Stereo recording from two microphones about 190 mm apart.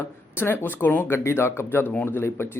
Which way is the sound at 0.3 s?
10° left (ahead or behind).